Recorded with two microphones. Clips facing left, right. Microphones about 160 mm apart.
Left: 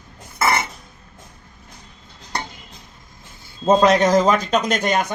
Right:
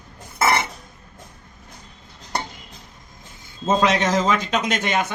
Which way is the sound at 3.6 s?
40° left (ahead or behind).